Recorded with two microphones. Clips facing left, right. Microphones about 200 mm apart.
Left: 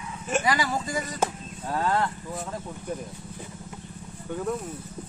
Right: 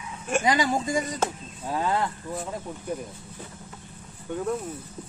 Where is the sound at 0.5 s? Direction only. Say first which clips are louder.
Right 6 dB; 20° right (ahead or behind).